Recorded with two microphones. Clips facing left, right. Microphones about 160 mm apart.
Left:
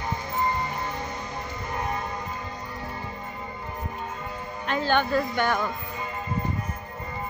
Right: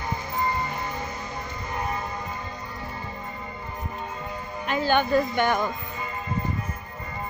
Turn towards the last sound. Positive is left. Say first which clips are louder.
# right 2 dB
turn(degrees=-20)  # may be behind; listen again after turning